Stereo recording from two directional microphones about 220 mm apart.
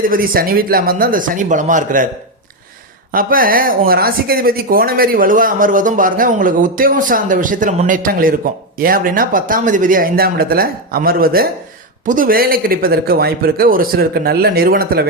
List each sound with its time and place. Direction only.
0.0 s speech: 40° right (ahead or behind)
3.1 s speech: 40° right (ahead or behind)